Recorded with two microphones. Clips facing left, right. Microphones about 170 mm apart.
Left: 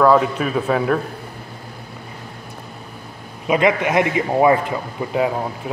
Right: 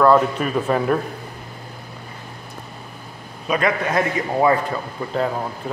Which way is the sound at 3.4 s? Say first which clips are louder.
Left 4 dB; 20° left (ahead or behind).